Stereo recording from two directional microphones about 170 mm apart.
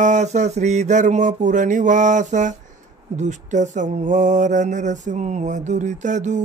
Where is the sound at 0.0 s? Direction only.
45° right (ahead or behind).